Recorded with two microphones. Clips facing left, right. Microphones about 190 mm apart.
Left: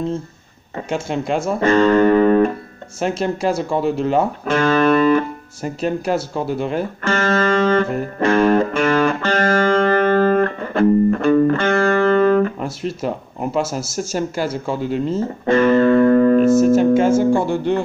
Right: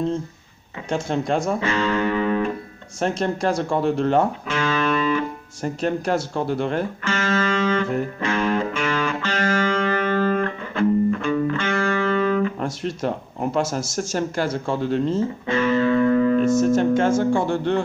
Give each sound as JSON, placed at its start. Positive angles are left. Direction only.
{"t": 0.8, "sound": "speech", "side_deg": 5}
{"t": 1.6, "sound": "music", "side_deg": 50}
{"t": 3.0, "sound": "speech", "side_deg": 5}
{"t": 4.5, "sound": "music", "side_deg": 50}
{"t": 5.6, "sound": "speech", "side_deg": 5}
{"t": 7.0, "sound": "music", "side_deg": 50}
{"t": 12.5, "sound": "speech", "side_deg": 5}
{"t": 15.4, "sound": "music", "side_deg": 50}
{"t": 16.5, "sound": "speech", "side_deg": 5}